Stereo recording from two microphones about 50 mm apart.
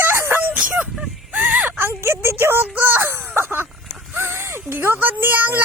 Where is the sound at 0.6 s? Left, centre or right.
Right.